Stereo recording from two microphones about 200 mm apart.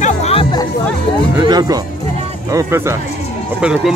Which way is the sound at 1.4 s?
20° right (ahead or behind).